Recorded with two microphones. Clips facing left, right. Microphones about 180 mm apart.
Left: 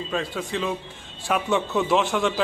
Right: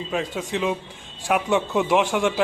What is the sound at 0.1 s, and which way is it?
A man's voice, 15° right (ahead or behind).